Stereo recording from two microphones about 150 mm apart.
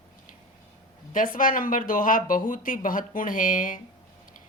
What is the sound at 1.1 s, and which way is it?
Speech, 65° left (ahead or behind).